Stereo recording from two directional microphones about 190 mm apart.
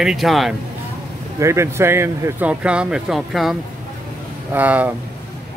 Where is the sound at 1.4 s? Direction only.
15° right (ahead or behind).